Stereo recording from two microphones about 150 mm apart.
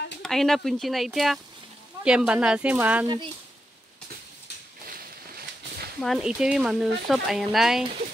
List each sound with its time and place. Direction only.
0.2 s speech: centre (ahead or behind)
4.8 s a sound: 85° right
5.9 s speech: centre (ahead or behind)